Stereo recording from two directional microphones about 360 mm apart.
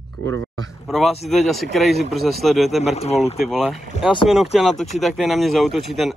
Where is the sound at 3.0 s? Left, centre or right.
Centre.